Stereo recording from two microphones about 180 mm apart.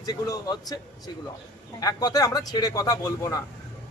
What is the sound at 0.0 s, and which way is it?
Speech, 20° left (ahead or behind).